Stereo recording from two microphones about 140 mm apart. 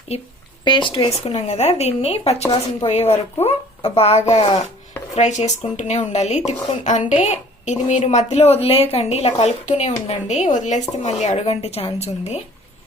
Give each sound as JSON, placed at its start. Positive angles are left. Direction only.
{"t": 0.1, "sound": "speech", "side_deg": 50}
{"t": 0.6, "sound": "speech", "side_deg": 35}